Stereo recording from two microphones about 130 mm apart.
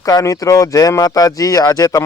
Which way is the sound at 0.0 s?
25° left (ahead or behind).